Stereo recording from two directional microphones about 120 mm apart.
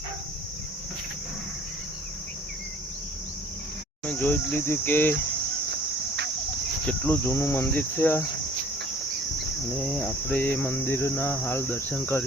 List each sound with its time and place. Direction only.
4.0 s cricket: 10° left (ahead or behind)
6.8 s cricket: 15° left (ahead or behind)
9.7 s cricket: 5° left (ahead or behind)